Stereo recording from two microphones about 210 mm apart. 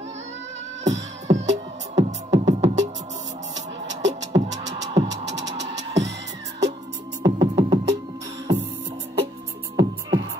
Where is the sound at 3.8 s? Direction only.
60° right (ahead or behind).